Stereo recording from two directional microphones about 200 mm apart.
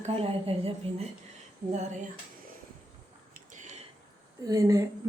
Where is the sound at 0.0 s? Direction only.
30° right (ahead or behind).